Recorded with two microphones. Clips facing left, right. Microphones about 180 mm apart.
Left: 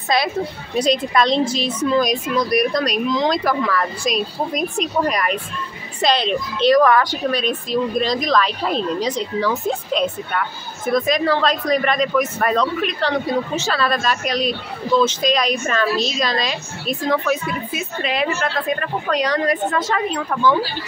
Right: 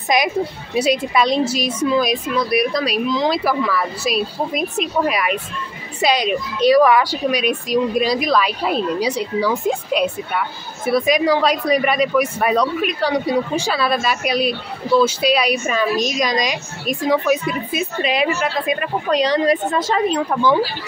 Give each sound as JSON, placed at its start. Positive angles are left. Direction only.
{"t": 0.1, "sound": "a woman's voice", "side_deg": -15}
{"t": 19.2, "sound": "a woman's voice", "side_deg": -25}